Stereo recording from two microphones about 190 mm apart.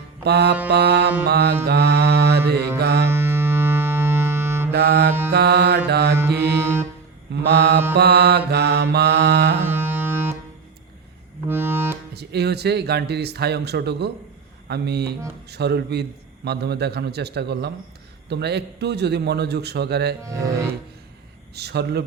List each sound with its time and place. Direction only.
0.3 s a man's voice: 60° right (ahead or behind)
1.6 s mantra: 60° right (ahead or behind)
2.7 s music: 60° right (ahead or behind)
3.1 s music: 10° right (ahead or behind)
4.7 s music: 60° right (ahead or behind)
5.3 s mantra: 60° right (ahead or behind)
6.4 s music: 10° right (ahead or behind)
7.4 s a man's voice: 60° right (ahead or behind)
9.6 s music: 10° right (ahead or behind)
11.4 s music: 10° right (ahead or behind)
12.1 s a man's voice: 60° right (ahead or behind)
20.2 s speech: 15° right (ahead or behind)
21.5 s a man's voice: 60° right (ahead or behind)